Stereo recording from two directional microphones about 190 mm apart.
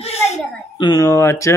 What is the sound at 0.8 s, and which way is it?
Speech, 20° left (ahead or behind).